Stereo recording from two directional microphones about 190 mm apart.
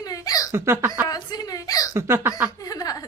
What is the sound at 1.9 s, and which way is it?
Speech, 15° right (ahead or behind).